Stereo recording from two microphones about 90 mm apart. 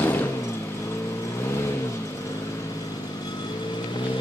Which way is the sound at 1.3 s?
30° left (ahead or behind).